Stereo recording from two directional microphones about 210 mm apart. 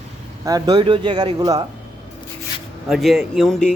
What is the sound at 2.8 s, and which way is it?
Speech, centre (ahead or behind).